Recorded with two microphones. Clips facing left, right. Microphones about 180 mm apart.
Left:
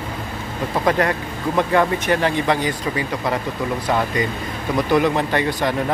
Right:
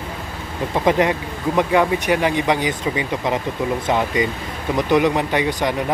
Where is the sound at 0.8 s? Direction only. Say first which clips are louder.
Right 2 dB; 20° right (ahead or behind).